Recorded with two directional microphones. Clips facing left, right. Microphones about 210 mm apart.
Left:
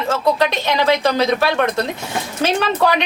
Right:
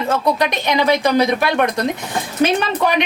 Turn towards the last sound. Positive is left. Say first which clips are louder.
# even
turn(degrees=-15)  # may be behind; listen again after turning